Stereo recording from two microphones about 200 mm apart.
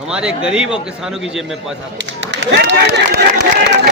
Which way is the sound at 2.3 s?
60° right (ahead or behind).